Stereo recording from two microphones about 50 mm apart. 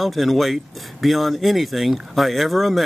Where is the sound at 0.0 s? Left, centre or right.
Centre.